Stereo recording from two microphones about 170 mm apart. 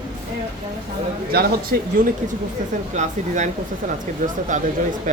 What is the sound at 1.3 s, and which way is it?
Speech, 65° right (ahead or behind).